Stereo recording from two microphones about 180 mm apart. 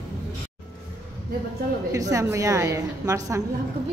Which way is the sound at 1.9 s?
20° right (ahead or behind).